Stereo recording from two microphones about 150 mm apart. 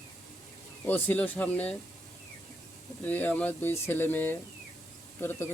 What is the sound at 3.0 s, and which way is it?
Speech, 10° left (ahead or behind).